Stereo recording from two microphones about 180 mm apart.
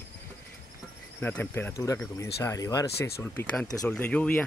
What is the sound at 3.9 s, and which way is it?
Speech, 5° left (ahead or behind).